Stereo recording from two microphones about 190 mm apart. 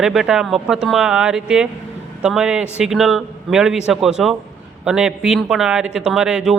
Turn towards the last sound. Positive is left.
turn(degrees=-5)  # may be behind; listen again after turning